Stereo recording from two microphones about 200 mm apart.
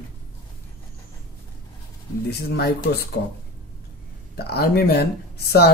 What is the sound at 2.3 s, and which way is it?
Speech, 55° left (ahead or behind).